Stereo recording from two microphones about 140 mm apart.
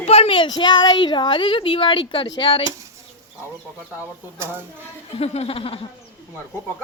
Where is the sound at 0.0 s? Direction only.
45° left (ahead or behind).